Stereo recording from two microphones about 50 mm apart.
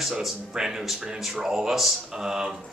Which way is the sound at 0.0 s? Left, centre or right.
Centre.